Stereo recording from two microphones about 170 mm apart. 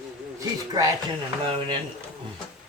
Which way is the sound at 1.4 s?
35° right (ahead or behind).